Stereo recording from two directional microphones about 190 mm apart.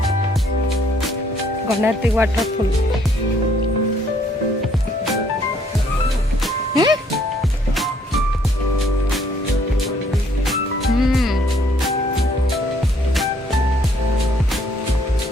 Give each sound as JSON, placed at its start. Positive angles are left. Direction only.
{"t": 1.6, "sound": "speech", "side_deg": -10}
{"t": 6.7, "sound": "music", "side_deg": -20}
{"t": 10.4, "sound": "music", "side_deg": 0}